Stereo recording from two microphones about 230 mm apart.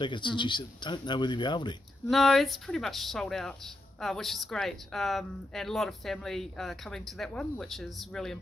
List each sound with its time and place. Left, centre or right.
0.0 s speech: left
2.0 s a woman's voice: centre